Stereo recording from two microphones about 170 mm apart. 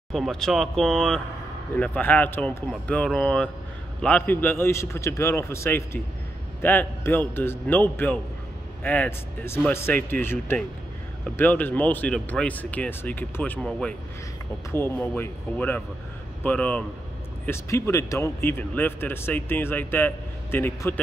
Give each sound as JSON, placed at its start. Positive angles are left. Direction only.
{"t": 0.1, "sound": "speech", "side_deg": 0}